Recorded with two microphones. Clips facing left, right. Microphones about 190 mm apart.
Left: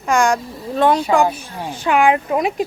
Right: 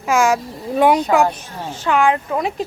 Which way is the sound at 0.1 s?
5° right (ahead or behind).